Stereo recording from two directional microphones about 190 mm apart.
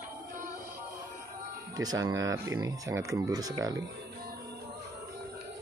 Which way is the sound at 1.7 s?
20° right (ahead or behind).